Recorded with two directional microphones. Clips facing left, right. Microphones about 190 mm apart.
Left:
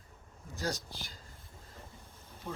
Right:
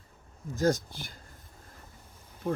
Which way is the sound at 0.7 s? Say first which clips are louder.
Right 10 dB; 55° right (ahead or behind).